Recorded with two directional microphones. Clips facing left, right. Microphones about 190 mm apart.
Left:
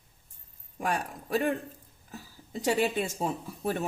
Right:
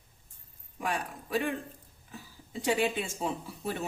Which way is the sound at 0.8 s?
45° left (ahead or behind).